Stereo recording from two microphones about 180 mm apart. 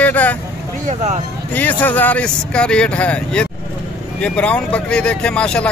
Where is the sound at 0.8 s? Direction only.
40° right (ahead or behind).